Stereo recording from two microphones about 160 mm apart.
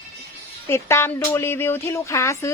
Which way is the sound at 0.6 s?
15° left (ahead or behind).